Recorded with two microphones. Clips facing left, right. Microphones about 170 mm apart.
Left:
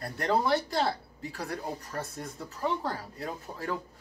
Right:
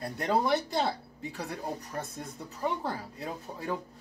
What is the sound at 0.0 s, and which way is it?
Speech, 15° right (ahead or behind).